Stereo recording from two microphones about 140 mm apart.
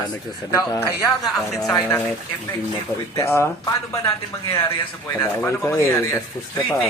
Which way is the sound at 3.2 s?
20° left (ahead or behind).